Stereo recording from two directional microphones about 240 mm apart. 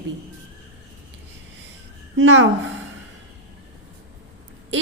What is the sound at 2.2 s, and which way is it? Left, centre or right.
Speech, right.